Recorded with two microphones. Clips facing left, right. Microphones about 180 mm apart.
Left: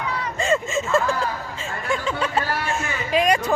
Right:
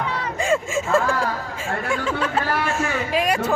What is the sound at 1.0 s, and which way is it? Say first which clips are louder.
Speech: right 1 dB; 50° right (ahead or behind).